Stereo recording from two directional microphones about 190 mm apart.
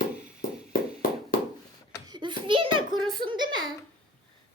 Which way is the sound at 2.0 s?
25° right (ahead or behind).